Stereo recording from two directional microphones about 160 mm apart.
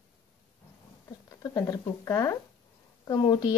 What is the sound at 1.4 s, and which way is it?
Speech, 20° left (ahead or behind).